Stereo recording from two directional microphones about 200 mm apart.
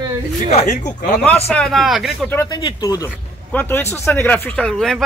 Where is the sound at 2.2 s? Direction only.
15° left (ahead or behind).